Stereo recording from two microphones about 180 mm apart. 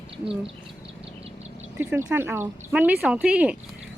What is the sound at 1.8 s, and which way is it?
Speech, 10° right (ahead or behind).